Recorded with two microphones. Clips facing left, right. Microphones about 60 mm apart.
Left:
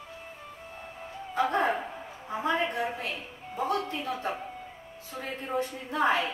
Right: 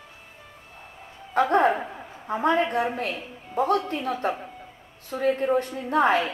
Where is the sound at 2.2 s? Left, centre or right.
Right.